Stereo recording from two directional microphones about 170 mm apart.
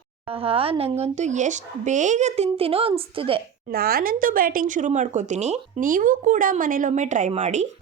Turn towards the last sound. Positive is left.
turn(degrees=-45)  # may be behind; listen again after turning